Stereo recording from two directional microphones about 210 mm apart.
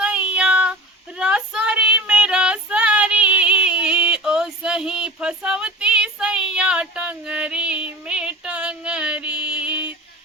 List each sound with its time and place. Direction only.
0.0 s female singing: 5° right (ahead or behind)
9.4 s mantra: 5° right (ahead or behind)